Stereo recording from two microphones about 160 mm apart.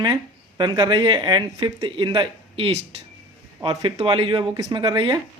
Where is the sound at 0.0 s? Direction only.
25° right (ahead or behind).